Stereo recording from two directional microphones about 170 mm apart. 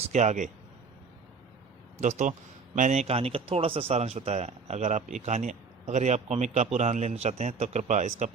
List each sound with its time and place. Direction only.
0.0 s speech: 45° right (ahead or behind)
2.0 s speech: 45° right (ahead or behind)